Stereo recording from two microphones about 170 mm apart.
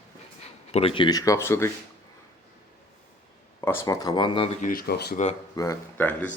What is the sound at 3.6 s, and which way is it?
Speech, 15° left (ahead or behind).